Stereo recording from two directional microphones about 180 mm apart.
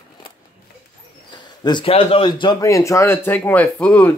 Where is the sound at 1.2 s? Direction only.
25° left (ahead or behind).